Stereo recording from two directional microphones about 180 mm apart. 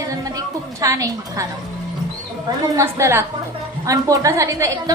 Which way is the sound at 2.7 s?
15° right (ahead or behind).